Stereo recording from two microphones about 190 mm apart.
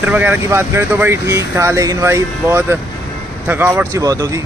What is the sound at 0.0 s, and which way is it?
Speech, 10° right (ahead or behind).